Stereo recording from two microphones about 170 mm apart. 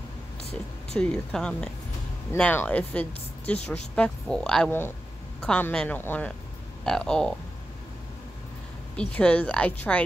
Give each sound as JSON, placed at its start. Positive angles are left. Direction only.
{"t": 0.4, "sound": "a sound", "side_deg": 35}
{"t": 0.9, "sound": "speech", "side_deg": 5}
{"t": 8.9, "sound": "speech", "side_deg": 5}